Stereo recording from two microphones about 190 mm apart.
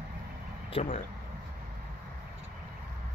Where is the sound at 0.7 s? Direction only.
30° left (ahead or behind).